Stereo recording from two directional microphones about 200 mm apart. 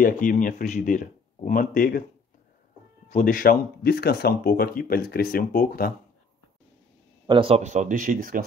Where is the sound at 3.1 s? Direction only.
40° left (ahead or behind).